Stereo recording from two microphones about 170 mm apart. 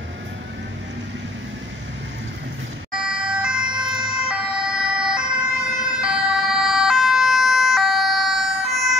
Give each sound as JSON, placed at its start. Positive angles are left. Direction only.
{"t": 2.9, "sound": "ambulance", "side_deg": -5}
{"t": 5.9, "sound": "emergency vehicle", "side_deg": -5}